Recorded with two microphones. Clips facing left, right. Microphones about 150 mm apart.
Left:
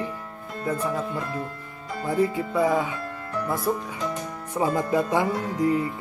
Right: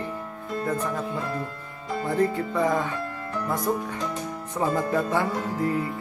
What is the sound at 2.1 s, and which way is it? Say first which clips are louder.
Speech: left 1 dB; 10° left (ahead or behind).